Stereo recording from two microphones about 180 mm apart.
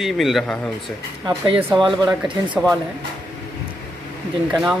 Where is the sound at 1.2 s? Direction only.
25° right (ahead or behind).